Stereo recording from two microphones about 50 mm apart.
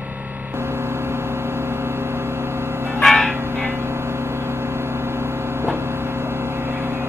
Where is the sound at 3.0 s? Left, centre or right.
Centre.